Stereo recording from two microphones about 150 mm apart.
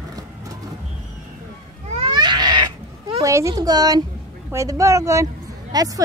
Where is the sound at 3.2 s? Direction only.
20° right (ahead or behind).